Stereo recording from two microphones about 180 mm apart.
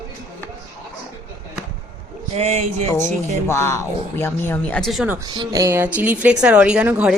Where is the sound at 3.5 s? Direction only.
15° left (ahead or behind); by 5.1 s centre (ahead or behind).